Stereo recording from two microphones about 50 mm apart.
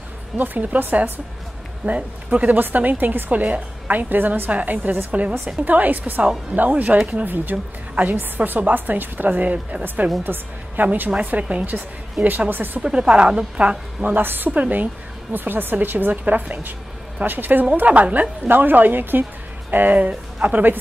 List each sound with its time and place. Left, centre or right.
0.4 s speech: right
1.9 s speech: right
4.5 s a woman's voice: right
7.5 s a woman's voice: right
8.0 s speech: right
12.8 s a woman's voice: centre
14.1 s speech: right
15.3 s speech: right
17.8 s a woman's voice: right
18.5 s speech: right